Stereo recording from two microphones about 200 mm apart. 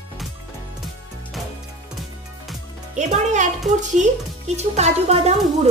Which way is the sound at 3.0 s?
35° right (ahead or behind).